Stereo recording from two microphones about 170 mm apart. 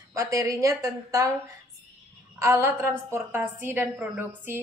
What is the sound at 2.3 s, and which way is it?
A woman's voice, 15° right (ahead or behind).